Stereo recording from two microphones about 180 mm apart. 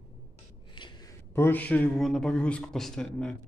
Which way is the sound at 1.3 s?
10° left (ahead or behind).